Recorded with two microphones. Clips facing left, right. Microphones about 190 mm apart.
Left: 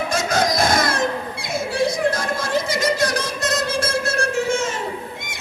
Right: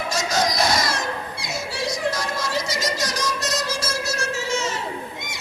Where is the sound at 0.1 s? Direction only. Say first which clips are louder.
Left 1 dB; 55° left (ahead or behind).